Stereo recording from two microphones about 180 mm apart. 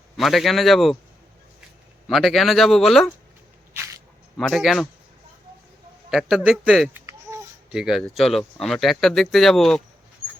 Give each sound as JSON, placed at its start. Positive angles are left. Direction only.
{"t": 0.2, "sound": "speech", "side_deg": 0}
{"t": 2.0, "sound": "speech", "side_deg": 0}
{"t": 4.4, "sound": "speech", "side_deg": 0}
{"t": 6.1, "sound": "speech", "side_deg": -5}
{"t": 7.0, "sound": "a sound", "side_deg": -15}
{"t": 7.7, "sound": "speech", "side_deg": -5}